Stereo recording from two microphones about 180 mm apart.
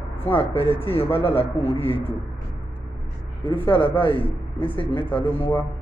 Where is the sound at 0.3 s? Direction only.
30° left (ahead or behind).